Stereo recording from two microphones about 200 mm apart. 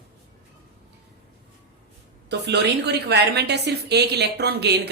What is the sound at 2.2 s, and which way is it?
A woman's voice, 60° right (ahead or behind).